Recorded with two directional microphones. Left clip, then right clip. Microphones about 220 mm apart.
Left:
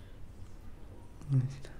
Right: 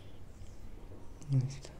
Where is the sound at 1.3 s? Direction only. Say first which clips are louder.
Left 1 dB; 20° left (ahead or behind).